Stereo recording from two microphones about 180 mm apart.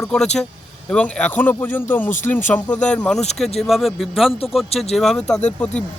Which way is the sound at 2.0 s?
45° left (ahead or behind).